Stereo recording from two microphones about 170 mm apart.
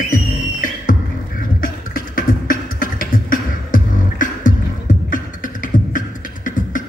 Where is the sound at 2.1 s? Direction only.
55° left (ahead or behind).